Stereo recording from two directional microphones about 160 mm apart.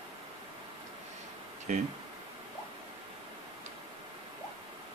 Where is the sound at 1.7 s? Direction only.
45° right (ahead or behind).